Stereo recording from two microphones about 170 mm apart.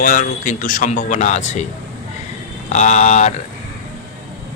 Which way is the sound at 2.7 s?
45° left (ahead or behind).